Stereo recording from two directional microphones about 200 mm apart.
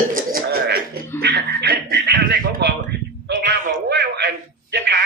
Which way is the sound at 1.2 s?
55° right (ahead or behind).